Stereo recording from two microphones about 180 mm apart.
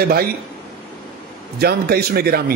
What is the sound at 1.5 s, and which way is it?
Speech, 60° right (ahead or behind).